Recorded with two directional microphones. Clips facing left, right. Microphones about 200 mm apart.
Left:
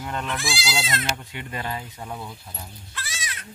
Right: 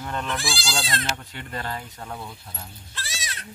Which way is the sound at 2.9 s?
35° right (ahead or behind).